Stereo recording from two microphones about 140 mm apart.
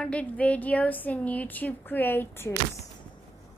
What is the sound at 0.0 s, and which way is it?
A woman's voice, 10° left (ahead or behind).